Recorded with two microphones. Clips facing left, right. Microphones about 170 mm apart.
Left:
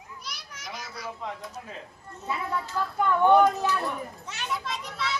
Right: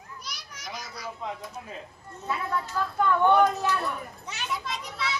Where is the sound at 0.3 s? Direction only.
Centre (ahead or behind).